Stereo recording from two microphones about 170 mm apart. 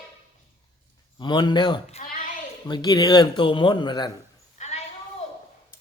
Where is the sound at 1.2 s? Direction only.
25° left (ahead or behind).